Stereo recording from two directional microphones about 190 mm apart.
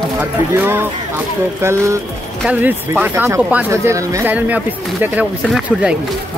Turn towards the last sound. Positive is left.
turn(degrees=-5)  # may be behind; listen again after turning